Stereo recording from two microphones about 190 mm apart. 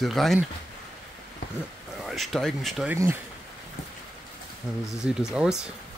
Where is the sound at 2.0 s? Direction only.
Centre (ahead or behind).